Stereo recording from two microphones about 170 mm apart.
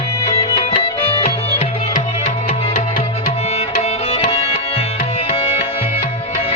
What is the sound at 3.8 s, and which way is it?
Music, 35° left (ahead or behind).